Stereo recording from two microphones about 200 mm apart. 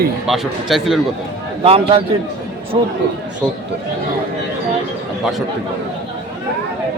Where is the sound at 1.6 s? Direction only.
25° right (ahead or behind).